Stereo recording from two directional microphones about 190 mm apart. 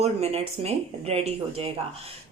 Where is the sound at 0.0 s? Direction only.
35° right (ahead or behind).